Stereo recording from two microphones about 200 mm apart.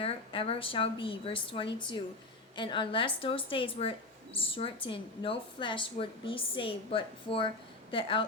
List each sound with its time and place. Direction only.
0.0 s a woman's voice: 25° left (ahead or behind)